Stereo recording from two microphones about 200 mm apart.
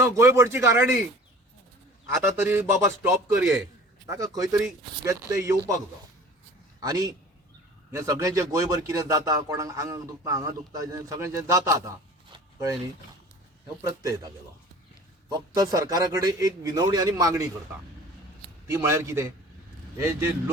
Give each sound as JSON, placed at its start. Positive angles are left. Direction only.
{"t": 0.0, "sound": "a man's voice", "side_deg": -15}
{"t": 2.4, "sound": "a man's voice", "side_deg": -10}
{"t": 6.8, "sound": "a man's voice", "side_deg": -15}
{"t": 13.8, "sound": "a man's voice", "side_deg": -15}
{"t": 15.3, "sound": "a man's voice", "side_deg": -20}
{"t": 18.7, "sound": "a man's voice", "side_deg": -15}